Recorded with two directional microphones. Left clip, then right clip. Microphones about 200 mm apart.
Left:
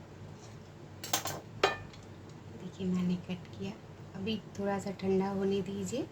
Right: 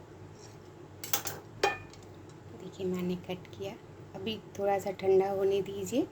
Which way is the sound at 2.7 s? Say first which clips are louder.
Right 3 dB; 45° right (ahead or behind).